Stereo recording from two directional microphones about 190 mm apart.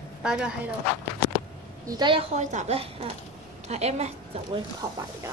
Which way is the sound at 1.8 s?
25° right (ahead or behind).